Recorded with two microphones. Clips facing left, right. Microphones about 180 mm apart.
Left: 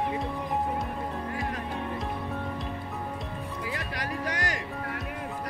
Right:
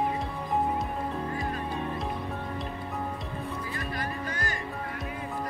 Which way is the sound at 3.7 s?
90° left.